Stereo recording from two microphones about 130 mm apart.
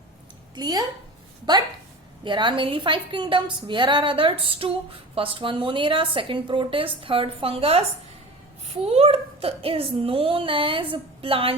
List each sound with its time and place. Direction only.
0.5 s a woman's voice: 30° right (ahead or behind)